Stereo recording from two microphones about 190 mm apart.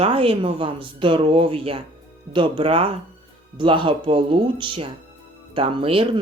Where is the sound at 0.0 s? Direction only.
30° right (ahead or behind).